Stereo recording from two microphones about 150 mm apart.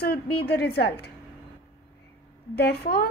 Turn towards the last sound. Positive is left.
turn(degrees=90)